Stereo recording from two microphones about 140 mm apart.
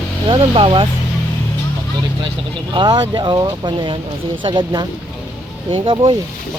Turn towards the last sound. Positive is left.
turn(degrees=-40)  # may be behind; listen again after turning